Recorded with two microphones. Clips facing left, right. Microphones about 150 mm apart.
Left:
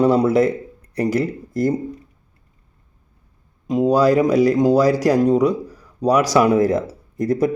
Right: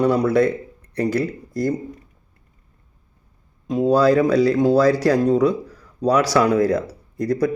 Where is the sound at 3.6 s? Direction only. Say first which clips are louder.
Left 1 dB; 15° left (ahead or behind).